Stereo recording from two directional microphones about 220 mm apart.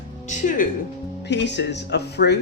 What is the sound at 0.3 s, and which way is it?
Speech, 35° left (ahead or behind).